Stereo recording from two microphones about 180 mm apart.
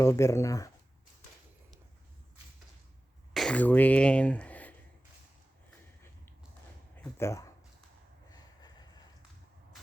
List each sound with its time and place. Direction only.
0.0 s speech: 15° left (ahead or behind)
3.3 s speech: 5° left (ahead or behind)
6.9 s a sound: 15° left (ahead or behind)